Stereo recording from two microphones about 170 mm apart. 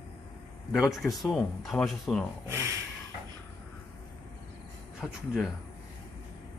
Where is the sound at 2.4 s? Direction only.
15° right (ahead or behind).